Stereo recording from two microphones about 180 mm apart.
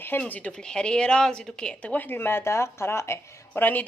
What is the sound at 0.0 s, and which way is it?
A woman's voice, 10° left (ahead or behind).